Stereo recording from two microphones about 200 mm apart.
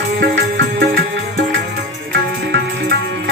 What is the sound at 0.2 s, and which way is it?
Music, 50° right (ahead or behind).